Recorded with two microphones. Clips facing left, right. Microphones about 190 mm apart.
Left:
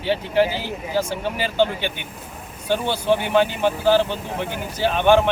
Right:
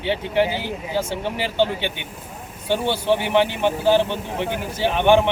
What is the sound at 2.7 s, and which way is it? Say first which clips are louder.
Speech: even; 20° right (ahead or behind).